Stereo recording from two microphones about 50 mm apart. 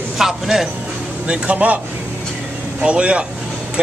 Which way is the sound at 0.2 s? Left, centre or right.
Centre.